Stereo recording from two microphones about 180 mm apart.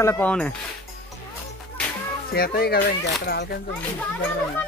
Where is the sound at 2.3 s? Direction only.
60° left (ahead or behind).